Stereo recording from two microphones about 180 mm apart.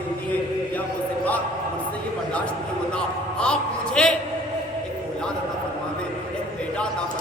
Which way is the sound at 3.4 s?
5° left (ahead or behind).